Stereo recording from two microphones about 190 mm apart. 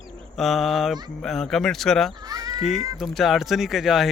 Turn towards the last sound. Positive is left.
turn(degrees=0)  # may be behind; listen again after turning